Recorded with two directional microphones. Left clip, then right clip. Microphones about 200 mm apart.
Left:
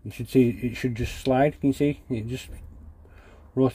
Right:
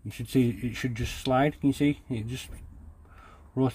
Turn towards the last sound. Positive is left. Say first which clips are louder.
# left 5 dB
turn(degrees=10)  # may be behind; listen again after turning